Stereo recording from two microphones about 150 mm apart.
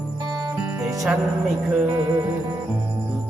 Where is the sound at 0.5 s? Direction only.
15° right (ahead or behind).